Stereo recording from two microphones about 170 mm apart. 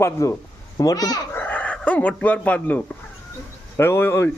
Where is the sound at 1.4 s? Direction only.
10° left (ahead or behind).